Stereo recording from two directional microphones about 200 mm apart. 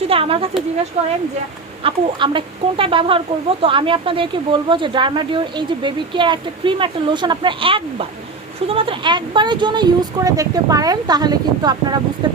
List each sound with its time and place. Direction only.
0.1 s speech: 25° right (ahead or behind)